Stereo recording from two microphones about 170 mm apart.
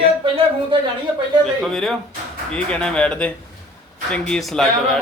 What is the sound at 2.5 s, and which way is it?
A man's voice, 5° left (ahead or behind).